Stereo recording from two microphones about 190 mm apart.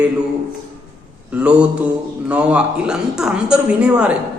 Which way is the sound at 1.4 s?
5° right (ahead or behind).